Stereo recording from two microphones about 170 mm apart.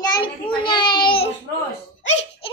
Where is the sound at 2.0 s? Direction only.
40° left (ahead or behind).